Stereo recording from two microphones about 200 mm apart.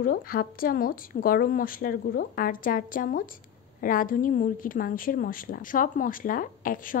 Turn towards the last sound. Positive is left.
turn(degrees=45)  # may be behind; listen again after turning